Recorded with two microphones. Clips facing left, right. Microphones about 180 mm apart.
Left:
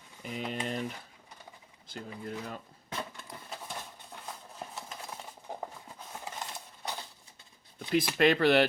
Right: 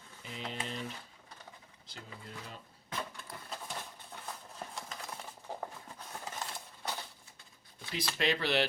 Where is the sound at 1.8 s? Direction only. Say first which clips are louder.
Left 9 dB; 55° left (ahead or behind).